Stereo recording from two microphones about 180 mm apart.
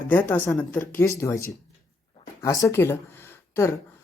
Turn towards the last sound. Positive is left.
turn(degrees=15)  # may be behind; listen again after turning